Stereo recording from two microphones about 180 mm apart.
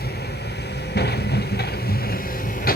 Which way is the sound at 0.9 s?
65° left (ahead or behind).